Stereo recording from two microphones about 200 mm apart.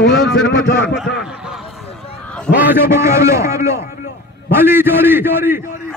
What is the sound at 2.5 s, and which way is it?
A man's voice, 10° right (ahead or behind).